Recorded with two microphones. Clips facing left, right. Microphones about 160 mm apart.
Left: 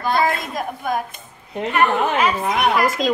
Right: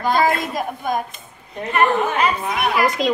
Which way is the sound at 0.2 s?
Centre (ahead or behind).